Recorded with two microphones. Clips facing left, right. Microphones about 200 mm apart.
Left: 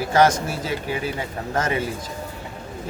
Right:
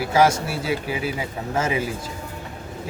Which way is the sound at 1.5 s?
10° right (ahead or behind).